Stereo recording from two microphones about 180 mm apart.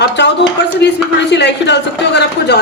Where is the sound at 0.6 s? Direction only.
75° left (ahead or behind).